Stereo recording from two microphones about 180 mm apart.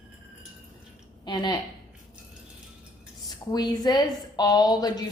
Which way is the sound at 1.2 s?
20° left (ahead or behind).